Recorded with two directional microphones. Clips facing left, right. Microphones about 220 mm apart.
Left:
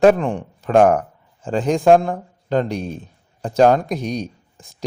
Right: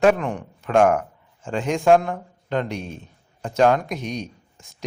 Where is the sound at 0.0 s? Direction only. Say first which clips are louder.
Left 4 dB; 35° left (ahead or behind).